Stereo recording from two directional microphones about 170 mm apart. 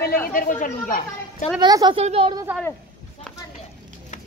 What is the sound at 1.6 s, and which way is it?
Speech, 25° right (ahead or behind).